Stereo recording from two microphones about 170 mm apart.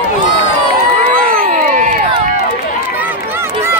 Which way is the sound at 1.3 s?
50° right (ahead or behind).